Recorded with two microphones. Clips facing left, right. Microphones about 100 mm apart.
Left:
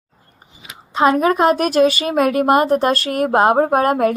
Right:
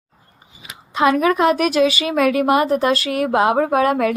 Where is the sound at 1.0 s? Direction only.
35° left (ahead or behind).